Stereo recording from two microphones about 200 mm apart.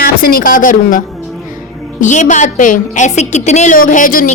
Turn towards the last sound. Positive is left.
turn(degrees=40)  # may be behind; listen again after turning